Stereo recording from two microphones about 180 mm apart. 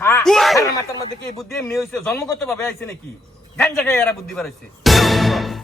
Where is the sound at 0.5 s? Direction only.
15° left (ahead or behind).